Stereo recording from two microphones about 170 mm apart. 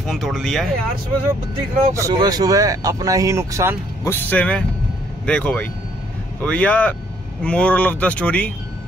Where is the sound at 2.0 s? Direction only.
20° right (ahead or behind).